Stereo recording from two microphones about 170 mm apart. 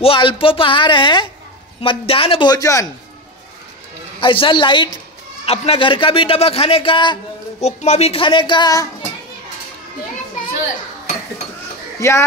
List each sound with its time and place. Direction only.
0.0 s a man's voice: 30° left (ahead or behind)
4.2 s a woman's voice: 30° left (ahead or behind)
7.6 s a woman's voice: 40° left (ahead or behind); by 8.8 s 25° left (ahead or behind)
12.0 s speech: 15° left (ahead or behind)